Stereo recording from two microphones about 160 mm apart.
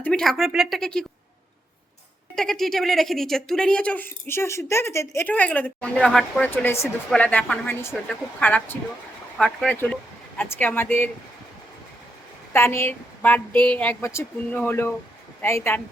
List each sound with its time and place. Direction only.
0.0 s speech: 5° left (ahead or behind)
2.3 s a woman's voice: 5° left (ahead or behind)
12.5 s a woman's voice: 15° left (ahead or behind)
13.5 s a sound: 30° right (ahead or behind)
13.7 s a woman's voice: 15° left (ahead or behind)